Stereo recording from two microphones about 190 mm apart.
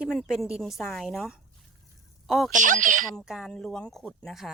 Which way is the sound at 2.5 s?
45° right (ahead or behind).